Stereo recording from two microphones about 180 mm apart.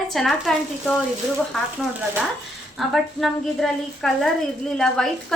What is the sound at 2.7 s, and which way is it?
A woman's voice, centre (ahead or behind).